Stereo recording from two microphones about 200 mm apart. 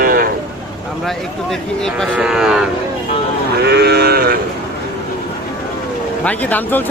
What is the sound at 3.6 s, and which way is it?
Livestock, 55° right (ahead or behind).